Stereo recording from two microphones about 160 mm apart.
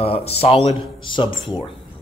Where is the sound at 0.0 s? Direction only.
40° left (ahead or behind).